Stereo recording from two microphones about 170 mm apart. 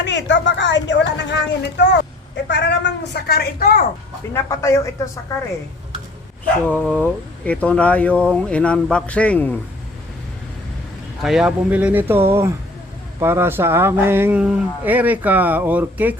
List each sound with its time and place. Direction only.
0.0 s a woman's voice: 90° left; by 3.8 s 60° left (ahead or behind)
4.4 s speech: 15° left (ahead or behind)
6.7 s speech: 5° left (ahead or behind)
11.2 s speech: centre (ahead or behind)